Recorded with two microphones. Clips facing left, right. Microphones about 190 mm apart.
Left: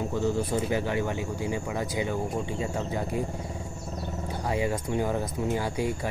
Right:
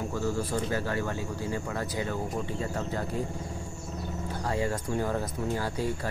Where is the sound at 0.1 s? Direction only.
20° left (ahead or behind).